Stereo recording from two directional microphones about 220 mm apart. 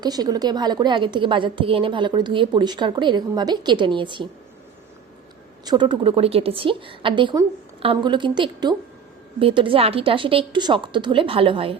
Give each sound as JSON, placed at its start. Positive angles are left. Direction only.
{"t": 0.0, "sound": "a woman's voice", "side_deg": -20}
{"t": 5.6, "sound": "a woman's voice", "side_deg": -20}